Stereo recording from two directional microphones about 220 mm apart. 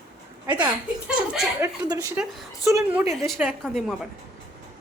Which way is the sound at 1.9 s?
15° right (ahead or behind).